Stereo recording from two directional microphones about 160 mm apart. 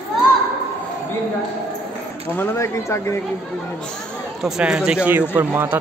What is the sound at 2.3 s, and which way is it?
Speech, 15° left (ahead or behind).